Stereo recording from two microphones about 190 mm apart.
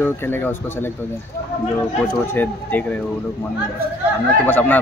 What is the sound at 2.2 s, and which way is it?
Speech, 10° left (ahead or behind).